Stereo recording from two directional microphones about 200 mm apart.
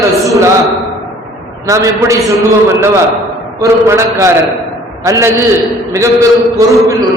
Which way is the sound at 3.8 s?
15° right (ahead or behind).